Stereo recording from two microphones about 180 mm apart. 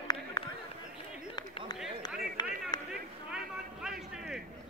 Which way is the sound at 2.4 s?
25° left (ahead or behind).